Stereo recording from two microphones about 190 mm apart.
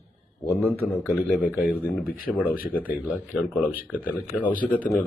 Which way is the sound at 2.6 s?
50° left (ahead or behind).